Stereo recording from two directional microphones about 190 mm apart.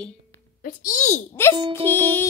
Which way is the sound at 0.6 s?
40° left (ahead or behind).